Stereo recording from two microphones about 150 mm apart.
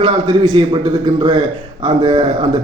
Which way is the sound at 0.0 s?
35° right (ahead or behind).